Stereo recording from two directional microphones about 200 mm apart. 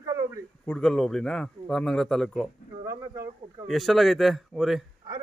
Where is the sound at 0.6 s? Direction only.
5° left (ahead or behind).